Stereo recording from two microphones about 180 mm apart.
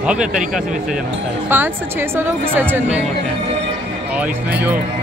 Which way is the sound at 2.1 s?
10° right (ahead or behind).